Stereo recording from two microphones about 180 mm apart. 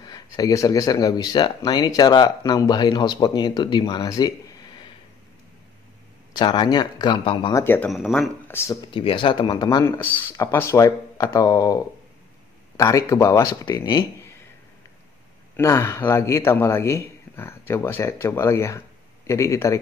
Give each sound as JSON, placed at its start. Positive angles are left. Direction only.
{"t": 0.0, "sound": "speech", "side_deg": 20}
{"t": 6.3, "sound": "speech", "side_deg": 25}
{"t": 7.6, "sound": "a man's voice", "side_deg": 10}
{"t": 7.9, "sound": "speech", "side_deg": 0}
{"t": 8.9, "sound": "a man's voice", "side_deg": 30}
{"t": 15.5, "sound": "a man's voice", "side_deg": 15}